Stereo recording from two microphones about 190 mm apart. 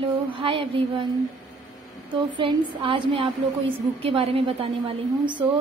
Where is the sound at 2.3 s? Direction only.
25° right (ahead or behind).